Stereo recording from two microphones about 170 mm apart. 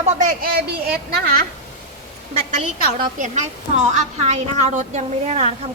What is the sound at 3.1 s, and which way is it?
A woman's voice, 45° right (ahead or behind).